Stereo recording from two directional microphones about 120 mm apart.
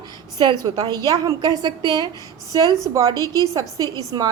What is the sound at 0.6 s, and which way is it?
A woman's voice, 35° right (ahead or behind).